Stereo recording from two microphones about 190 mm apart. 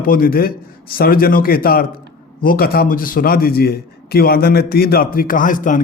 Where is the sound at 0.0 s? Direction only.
50° left (ahead or behind).